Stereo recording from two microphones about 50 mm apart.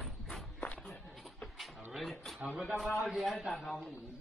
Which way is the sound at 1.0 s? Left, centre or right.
Centre.